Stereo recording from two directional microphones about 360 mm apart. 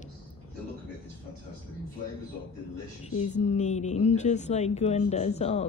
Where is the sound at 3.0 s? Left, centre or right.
Centre.